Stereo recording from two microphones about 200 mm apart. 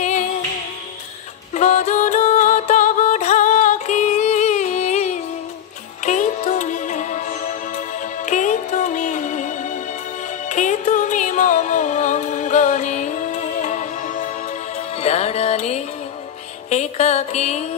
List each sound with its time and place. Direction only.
0.0 s music: 35° left (ahead or behind)
1.5 s music: 35° left (ahead or behind)
10.5 s music: 40° left (ahead or behind)